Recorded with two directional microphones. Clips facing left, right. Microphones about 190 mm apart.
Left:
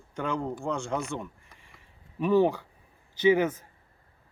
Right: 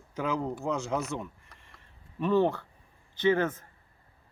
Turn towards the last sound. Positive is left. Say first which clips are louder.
# left 3 dB
turn(degrees=15)  # may be behind; listen again after turning